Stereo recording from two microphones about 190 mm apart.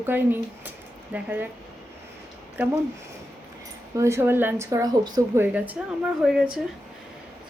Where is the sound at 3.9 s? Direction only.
15° right (ahead or behind).